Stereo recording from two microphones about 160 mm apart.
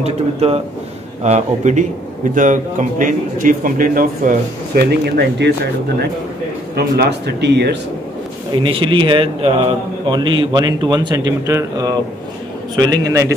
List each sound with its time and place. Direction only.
0.0 s a man's voice: 40° right (ahead or behind); by 5.5 s 90° right
6.7 s speech: 90° right
8.5 s a man's voice: 30° right (ahead or behind)